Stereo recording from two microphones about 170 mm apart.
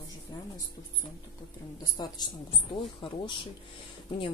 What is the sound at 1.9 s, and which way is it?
Speech, 25° left (ahead or behind).